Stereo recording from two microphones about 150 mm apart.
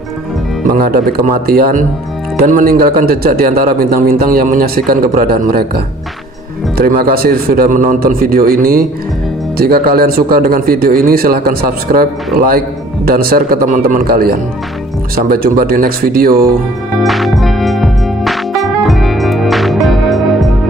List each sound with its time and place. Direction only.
0.7 s speech: 80° right
6.8 s speech: 85° right
9.6 s a man's voice: 90° right
17.0 s music: centre (ahead or behind)